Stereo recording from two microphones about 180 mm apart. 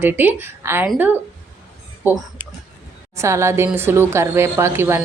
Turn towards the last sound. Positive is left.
turn(degrees=-15)  # may be behind; listen again after turning